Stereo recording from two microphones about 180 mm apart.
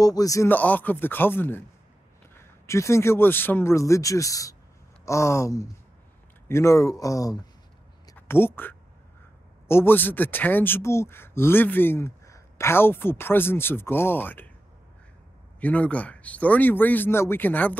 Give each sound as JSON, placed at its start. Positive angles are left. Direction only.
{"t": 0.0, "sound": "speech", "side_deg": 20}
{"t": 2.6, "sound": "speech", "side_deg": 15}
{"t": 15.6, "sound": "speech", "side_deg": 5}